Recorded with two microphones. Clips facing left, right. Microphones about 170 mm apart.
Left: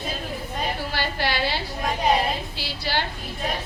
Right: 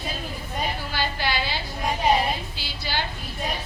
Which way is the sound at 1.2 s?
65° left (ahead or behind).